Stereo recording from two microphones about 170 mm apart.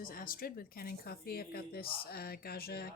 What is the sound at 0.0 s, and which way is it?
Speech, 55° left (ahead or behind).